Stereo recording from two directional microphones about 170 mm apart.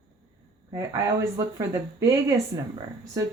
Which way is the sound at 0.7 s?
15° right (ahead or behind).